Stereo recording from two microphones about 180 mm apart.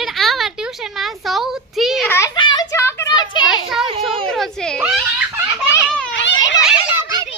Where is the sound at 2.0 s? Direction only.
15° left (ahead or behind).